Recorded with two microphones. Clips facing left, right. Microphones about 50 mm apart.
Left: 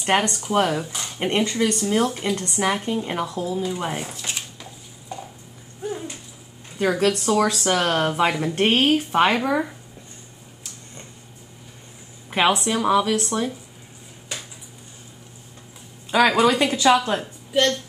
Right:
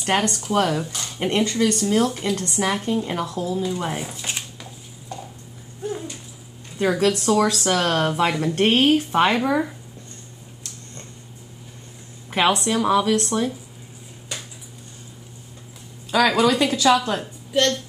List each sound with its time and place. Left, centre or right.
0.0 s a woman's voice: centre
4.2 s a sound: centre
5.1 s a sound: centre
5.9 s dog: centre
6.8 s speech: centre
10.6 s a sound: centre
12.3 s speech: centre
16.1 s a woman's voice: left
17.2 s a woman's voice: centre